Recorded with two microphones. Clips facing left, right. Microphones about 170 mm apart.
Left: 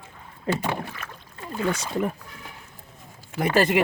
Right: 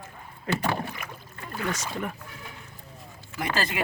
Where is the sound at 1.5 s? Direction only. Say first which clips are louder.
Left 5 dB; 30° left (ahead or behind).